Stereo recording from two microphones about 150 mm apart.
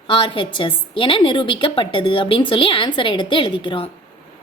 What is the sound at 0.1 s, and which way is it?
A woman's voice, 35° left (ahead or behind).